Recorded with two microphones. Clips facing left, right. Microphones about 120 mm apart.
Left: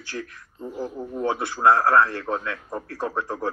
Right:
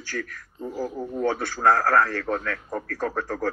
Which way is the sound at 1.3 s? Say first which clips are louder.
Left 4 dB; 25° left (ahead or behind).